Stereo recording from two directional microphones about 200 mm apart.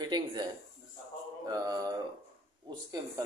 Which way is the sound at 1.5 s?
20° right (ahead or behind).